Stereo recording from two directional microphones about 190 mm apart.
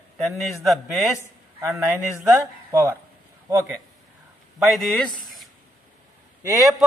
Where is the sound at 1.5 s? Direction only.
15° right (ahead or behind).